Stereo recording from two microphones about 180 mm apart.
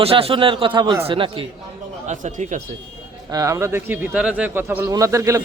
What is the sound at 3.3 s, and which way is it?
A man's voice, 20° right (ahead or behind).